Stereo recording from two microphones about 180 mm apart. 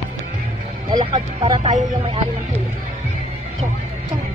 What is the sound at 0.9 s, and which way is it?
Speech, 30° right (ahead or behind).